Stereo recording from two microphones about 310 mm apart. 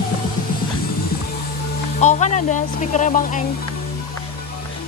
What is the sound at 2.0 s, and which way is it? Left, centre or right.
Speech, left.